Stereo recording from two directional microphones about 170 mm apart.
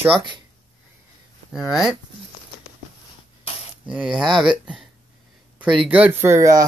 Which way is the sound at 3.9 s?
5° right (ahead or behind).